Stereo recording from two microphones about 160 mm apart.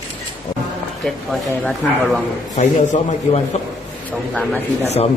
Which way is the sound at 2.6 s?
50° left (ahead or behind).